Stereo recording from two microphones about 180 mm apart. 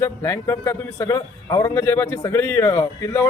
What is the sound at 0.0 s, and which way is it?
Speech, 15° left (ahead or behind).